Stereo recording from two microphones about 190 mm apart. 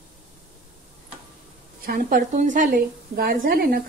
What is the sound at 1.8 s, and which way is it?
A woman's voice, 50° right (ahead or behind).